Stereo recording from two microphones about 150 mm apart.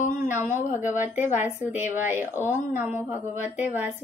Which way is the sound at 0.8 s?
15° right (ahead or behind).